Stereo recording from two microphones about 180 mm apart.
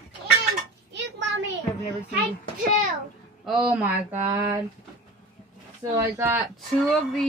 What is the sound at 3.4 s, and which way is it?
Speech, 5° right (ahead or behind).